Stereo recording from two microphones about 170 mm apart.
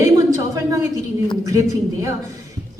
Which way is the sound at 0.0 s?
20° right (ahead or behind).